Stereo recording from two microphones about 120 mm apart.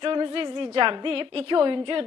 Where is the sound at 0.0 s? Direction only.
40° right (ahead or behind).